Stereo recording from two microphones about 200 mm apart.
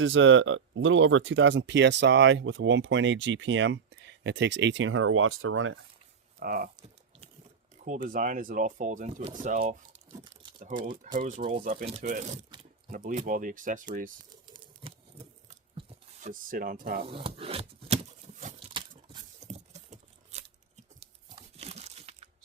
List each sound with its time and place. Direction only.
0.0 s speech: 75° right (ahead or behind)
6.4 s speech: 45° right (ahead or behind)
8.0 s speech: 40° right (ahead or behind)
14.8 s chewing: 30° right (ahead or behind)
16.2 s speech: 45° right (ahead or behind)
17.0 s speech: 30° right (ahead or behind)
18.6 s tearing: 25° right (ahead or behind)
21.6 s crumpling: 30° right (ahead or behind)